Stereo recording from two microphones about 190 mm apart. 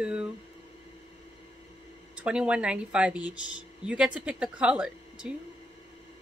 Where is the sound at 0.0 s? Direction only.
5° right (ahead or behind).